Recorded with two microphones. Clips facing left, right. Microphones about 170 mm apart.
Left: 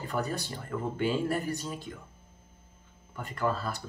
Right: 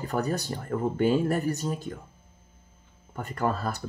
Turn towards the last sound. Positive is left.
turn(degrees=-45)  # may be behind; listen again after turning